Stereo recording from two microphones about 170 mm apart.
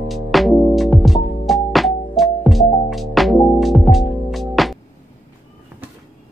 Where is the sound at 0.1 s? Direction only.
Centre (ahead or behind).